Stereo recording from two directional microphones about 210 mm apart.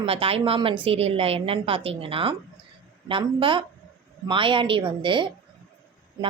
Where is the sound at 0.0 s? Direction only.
25° right (ahead or behind).